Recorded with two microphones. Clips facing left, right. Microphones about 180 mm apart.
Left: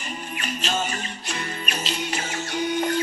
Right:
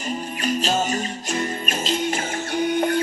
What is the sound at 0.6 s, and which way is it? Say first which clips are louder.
Music: right 2 dB; 40° right (ahead or behind).